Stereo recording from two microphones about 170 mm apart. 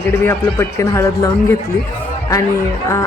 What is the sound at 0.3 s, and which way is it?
Speech, 15° left (ahead or behind).